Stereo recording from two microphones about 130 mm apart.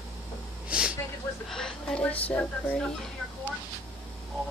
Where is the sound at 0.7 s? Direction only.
10° right (ahead or behind).